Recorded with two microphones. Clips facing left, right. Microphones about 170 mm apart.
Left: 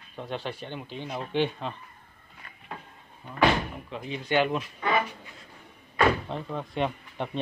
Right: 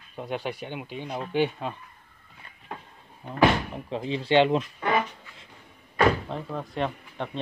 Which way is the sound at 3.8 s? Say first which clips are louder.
Right 5 dB; 30° right (ahead or behind).